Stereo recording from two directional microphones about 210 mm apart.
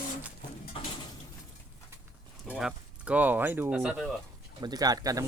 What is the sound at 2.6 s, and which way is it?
Speech, 5° right (ahead or behind).